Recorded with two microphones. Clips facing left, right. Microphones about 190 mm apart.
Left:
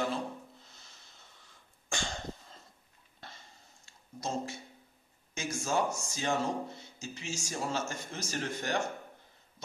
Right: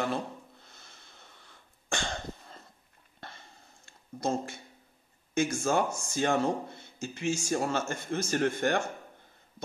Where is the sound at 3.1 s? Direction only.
60° right (ahead or behind).